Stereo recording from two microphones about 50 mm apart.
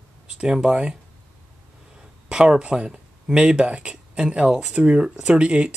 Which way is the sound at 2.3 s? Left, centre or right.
Centre.